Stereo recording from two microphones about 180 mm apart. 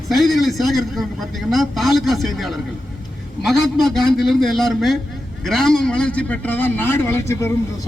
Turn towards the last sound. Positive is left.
turn(degrees=15)  # may be behind; listen again after turning